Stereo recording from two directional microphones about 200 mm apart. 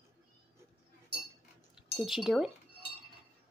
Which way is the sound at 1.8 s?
Centre (ahead or behind).